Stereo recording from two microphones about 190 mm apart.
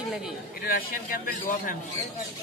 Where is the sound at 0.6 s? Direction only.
50° left (ahead or behind).